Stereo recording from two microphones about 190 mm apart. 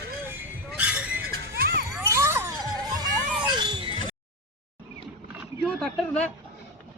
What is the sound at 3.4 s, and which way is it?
Music, 25° right (ahead or behind).